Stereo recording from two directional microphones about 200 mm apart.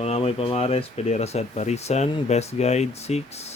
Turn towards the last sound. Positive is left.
turn(degrees=30)  # may be behind; listen again after turning